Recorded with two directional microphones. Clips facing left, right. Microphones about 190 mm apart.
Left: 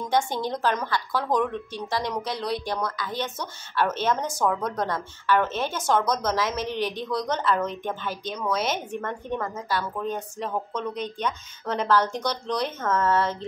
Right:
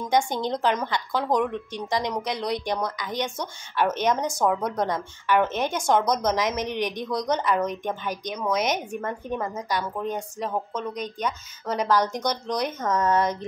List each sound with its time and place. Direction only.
0.1 s speech: 15° right (ahead or behind)
8.9 s a woman's voice: 5° right (ahead or behind)